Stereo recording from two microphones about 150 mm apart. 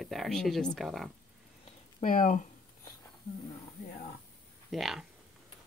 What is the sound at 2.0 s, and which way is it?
Speech, 55° left (ahead or behind).